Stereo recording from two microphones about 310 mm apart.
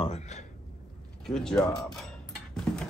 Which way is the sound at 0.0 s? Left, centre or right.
Left.